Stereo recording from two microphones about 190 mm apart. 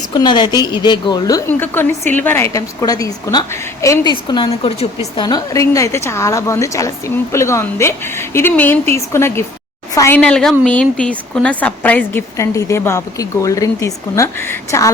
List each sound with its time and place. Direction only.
0.1 s a woman's voice: 20° left (ahead or behind)
5.2 s a woman's voice: 20° left (ahead or behind)
10.2 s a woman's voice: 5° left (ahead or behind)